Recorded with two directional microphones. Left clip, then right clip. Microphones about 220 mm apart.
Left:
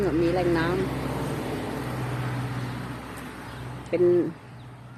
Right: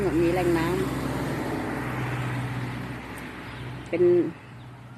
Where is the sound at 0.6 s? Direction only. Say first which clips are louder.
Even; 50° right (ahead or behind); by 1.8 s 25° right (ahead or behind).